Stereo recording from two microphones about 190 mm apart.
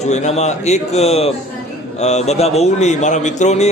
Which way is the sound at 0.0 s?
35° left (ahead or behind).